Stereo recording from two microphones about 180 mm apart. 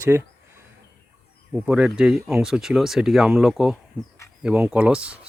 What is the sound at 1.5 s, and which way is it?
Speech, 10° right (ahead or behind).